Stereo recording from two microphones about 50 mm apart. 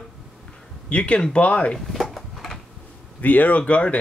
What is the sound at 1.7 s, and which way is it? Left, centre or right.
Drawer open or close, centre.